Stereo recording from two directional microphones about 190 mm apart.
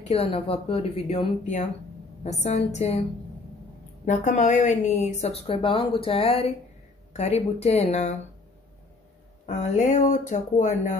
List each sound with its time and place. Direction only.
0.1 s speech: 30° left (ahead or behind)
4.0 s speech: 40° left (ahead or behind)
9.5 s speech: 35° left (ahead or behind)